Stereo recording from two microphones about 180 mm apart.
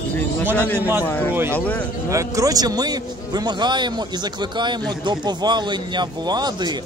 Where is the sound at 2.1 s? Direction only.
20° right (ahead or behind).